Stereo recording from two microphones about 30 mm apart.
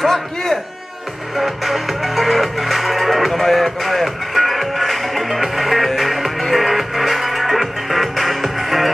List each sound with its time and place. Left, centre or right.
0.0 s speech: centre
1.3 s music: centre